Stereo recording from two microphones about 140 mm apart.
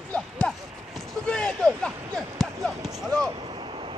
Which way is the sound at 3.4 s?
40° right (ahead or behind).